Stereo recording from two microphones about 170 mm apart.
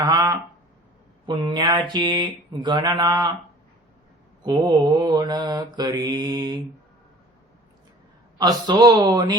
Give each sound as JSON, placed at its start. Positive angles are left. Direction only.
{"t": 0.0, "sound": "speech", "side_deg": -25}
{"t": 4.4, "sound": "speech", "side_deg": -25}
{"t": 8.4, "sound": "speech", "side_deg": -25}